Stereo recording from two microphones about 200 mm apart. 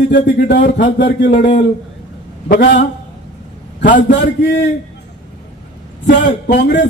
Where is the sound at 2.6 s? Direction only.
60° left (ahead or behind).